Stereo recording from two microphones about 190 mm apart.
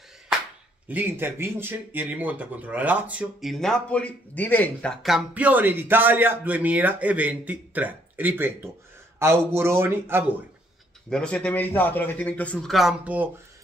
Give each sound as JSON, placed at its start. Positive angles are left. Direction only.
{"t": 0.8, "sound": "speech", "side_deg": -10}
{"t": 11.1, "sound": "a man's voice", "side_deg": 5}